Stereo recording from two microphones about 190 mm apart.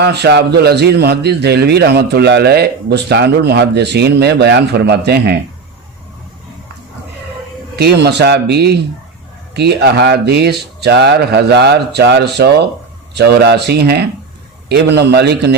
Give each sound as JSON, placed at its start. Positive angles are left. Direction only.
{"t": 0.0, "sound": "a man's voice", "side_deg": -60}
{"t": 7.8, "sound": "a man's voice", "side_deg": -60}